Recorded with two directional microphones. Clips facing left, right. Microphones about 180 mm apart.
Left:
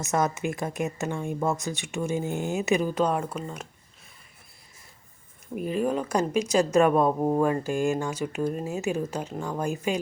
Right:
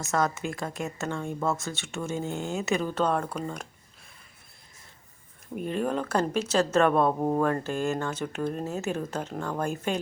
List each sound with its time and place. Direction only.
0.0 s speech: 20° left (ahead or behind)
5.5 s speech: 5° left (ahead or behind)